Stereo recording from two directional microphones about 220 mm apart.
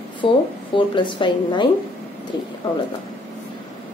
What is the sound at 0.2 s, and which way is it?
A woman's voice, 25° left (ahead or behind).